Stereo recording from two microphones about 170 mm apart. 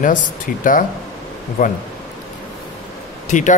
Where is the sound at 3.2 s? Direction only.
45° left (ahead or behind).